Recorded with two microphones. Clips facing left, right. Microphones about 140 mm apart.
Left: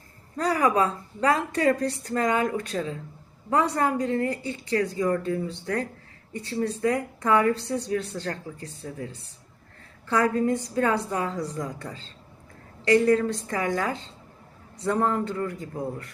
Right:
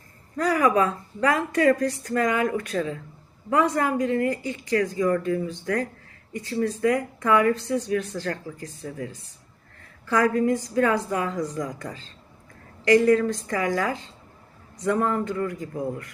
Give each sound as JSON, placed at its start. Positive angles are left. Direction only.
{"t": 0.3, "sound": "a woman's voice", "side_deg": 30}
{"t": 10.1, "sound": "a woman's voice", "side_deg": 30}